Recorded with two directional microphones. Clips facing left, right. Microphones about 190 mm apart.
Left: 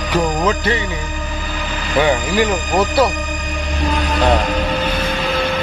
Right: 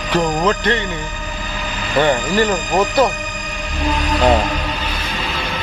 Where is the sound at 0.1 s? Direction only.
5° left (ahead or behind).